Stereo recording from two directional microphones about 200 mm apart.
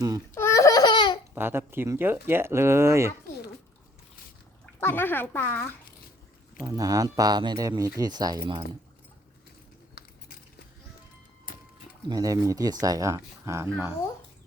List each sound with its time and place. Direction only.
0.3 s a sound: 15° left (ahead or behind)
1.4 s speech: 10° right (ahead or behind)
4.8 s speech: 10° left (ahead or behind)
6.6 s speech: 15° right (ahead or behind)
12.0 s speech: 20° right (ahead or behind)